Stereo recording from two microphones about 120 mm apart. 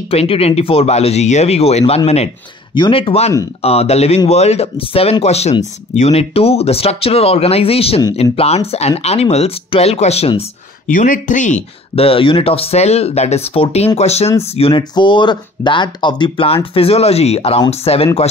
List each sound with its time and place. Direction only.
0.1 s speech: 55° left (ahead or behind)
2.7 s speech: 45° left (ahead or behind)
11.0 s speech: 90° left
11.9 s speech: 50° left (ahead or behind)
14.8 s speech: 40° left (ahead or behind); by 18.2 s 55° left (ahead or behind)